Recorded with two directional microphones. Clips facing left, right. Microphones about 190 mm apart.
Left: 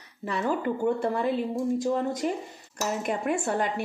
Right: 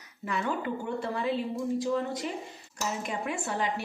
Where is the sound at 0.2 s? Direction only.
35° left (ahead or behind).